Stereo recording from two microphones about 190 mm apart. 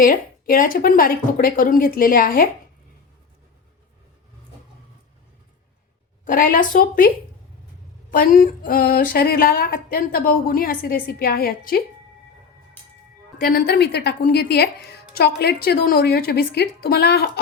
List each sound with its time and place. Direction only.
0.0 s speech: 50° left (ahead or behind)
6.2 s speech: 45° left (ahead or behind)
8.1 s speech: 50° left (ahead or behind)
13.4 s speech: 55° left (ahead or behind)